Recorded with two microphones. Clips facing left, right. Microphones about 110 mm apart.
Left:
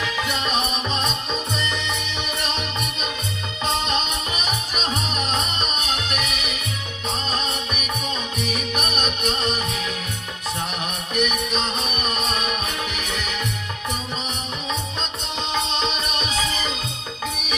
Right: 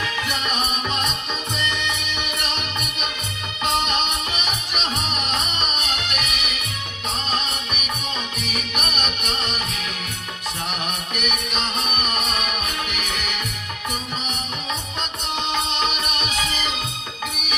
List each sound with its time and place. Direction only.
0.9 s music: 30° left (ahead or behind)
11.1 s music: 35° left (ahead or behind)
15.4 s music: 35° left (ahead or behind)